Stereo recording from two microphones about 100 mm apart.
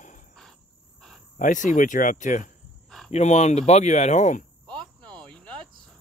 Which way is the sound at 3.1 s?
90° left.